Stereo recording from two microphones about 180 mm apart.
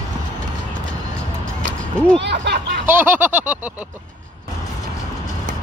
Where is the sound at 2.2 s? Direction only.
70° right (ahead or behind).